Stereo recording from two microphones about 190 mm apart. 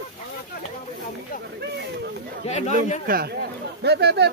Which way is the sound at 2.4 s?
35° left (ahead or behind).